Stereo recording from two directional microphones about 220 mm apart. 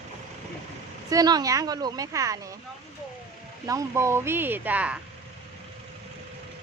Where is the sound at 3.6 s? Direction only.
15° right (ahead or behind).